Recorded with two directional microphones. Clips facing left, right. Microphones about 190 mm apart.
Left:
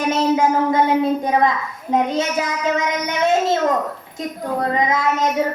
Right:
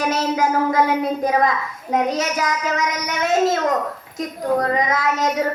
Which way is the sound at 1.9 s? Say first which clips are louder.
Left 1 dB; 25° left (ahead or behind).